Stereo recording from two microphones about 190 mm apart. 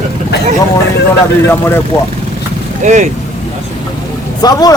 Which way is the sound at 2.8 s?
40° right (ahead or behind).